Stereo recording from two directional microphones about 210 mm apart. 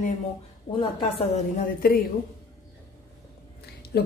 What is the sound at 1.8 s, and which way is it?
Speech, 45° left (ahead or behind).